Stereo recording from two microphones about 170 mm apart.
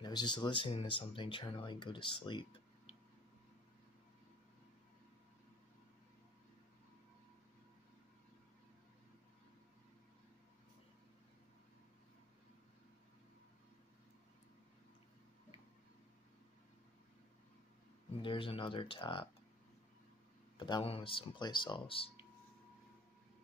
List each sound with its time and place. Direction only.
0.0 s speech: 25° left (ahead or behind)
18.2 s speech: 30° left (ahead or behind)
20.5 s speech: 25° left (ahead or behind)